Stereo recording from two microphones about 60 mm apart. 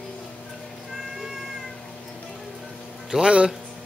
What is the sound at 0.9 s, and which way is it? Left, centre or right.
Cat, centre.